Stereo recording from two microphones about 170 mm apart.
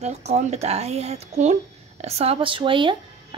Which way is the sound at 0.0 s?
40° right (ahead or behind).